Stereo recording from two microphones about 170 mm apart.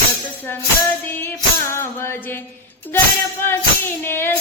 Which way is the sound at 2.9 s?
15° left (ahead or behind).